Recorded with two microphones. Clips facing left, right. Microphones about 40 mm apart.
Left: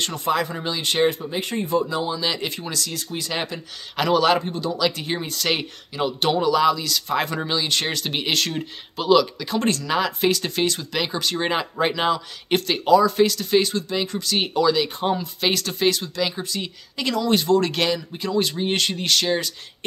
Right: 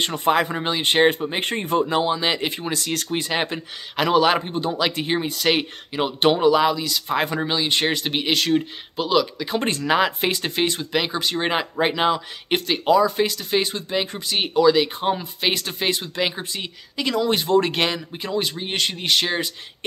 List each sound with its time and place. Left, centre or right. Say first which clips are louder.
0.2 s speech: right 4 dB; right
2.1 s speech: right 2 dB; right
2.9 s speech: right 6 dB; right
3.2 s speech: right 2 dB; right
3.9 s speech: right 1 dB; centre
5.9 s speech: right 2 dB; right
8.2 s speech: right 5 dB; centre
9.5 s speech: right 1 dB; centre
14.3 s speech: right 3 dB; centre; by 16.6 s right
16.6 s speech: right 1 dB; centre
18.4 s speech: left 3 dB; centre